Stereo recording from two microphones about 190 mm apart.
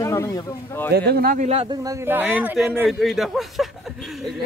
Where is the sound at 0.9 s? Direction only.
55° right (ahead or behind).